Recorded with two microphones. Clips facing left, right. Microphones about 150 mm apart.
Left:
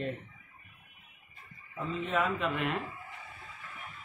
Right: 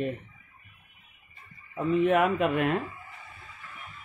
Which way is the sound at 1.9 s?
65° right (ahead or behind).